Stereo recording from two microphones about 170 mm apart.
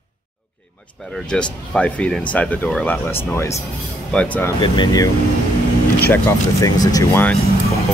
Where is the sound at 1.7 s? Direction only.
5° left (ahead or behind).